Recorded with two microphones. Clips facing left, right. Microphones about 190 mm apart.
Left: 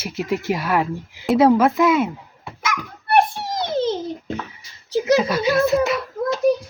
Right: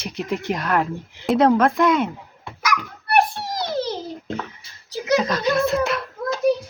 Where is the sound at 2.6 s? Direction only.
25° left (ahead or behind).